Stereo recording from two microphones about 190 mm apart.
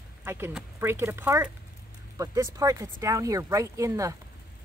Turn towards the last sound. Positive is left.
turn(degrees=-15)  # may be behind; listen again after turning